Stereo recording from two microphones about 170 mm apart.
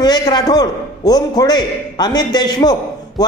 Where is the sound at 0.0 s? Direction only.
25° left (ahead or behind).